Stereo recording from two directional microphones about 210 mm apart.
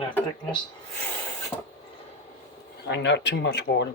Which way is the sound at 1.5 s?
10° left (ahead or behind).